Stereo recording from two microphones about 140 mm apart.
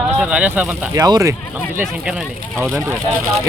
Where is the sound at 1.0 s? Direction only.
25° right (ahead or behind).